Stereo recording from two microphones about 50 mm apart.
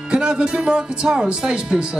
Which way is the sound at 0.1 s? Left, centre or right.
Centre.